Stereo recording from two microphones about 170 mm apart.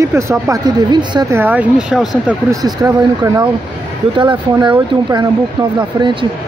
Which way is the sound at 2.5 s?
25° right (ahead or behind).